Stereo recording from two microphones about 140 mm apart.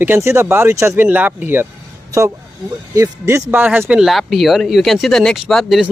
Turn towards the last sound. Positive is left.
turn(degrees=0)  # may be behind; listen again after turning